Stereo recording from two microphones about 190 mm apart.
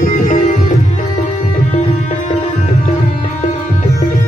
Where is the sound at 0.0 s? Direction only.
45° left (ahead or behind).